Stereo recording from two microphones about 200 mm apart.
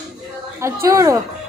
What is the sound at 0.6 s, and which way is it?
Speech, 15° right (ahead or behind).